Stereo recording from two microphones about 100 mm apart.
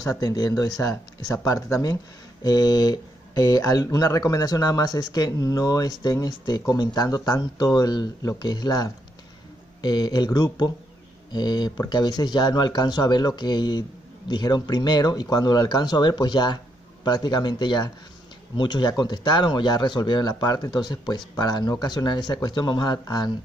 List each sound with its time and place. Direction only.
0.2 s speech: 40° left (ahead or behind)